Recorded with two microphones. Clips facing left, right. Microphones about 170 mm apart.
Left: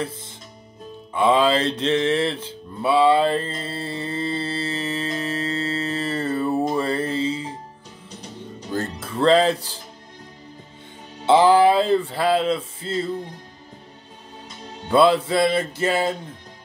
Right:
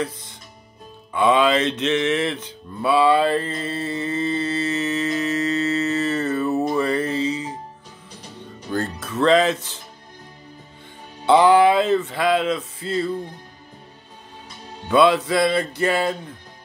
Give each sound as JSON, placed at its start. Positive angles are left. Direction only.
{"t": 1.1, "sound": "mantra", "side_deg": 30}
{"t": 8.5, "sound": "music", "side_deg": 25}
{"t": 11.2, "sound": "speech", "side_deg": 30}
{"t": 14.9, "sound": "music", "side_deg": 30}